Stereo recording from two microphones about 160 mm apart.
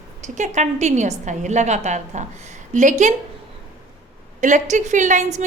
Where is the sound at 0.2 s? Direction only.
50° right (ahead or behind).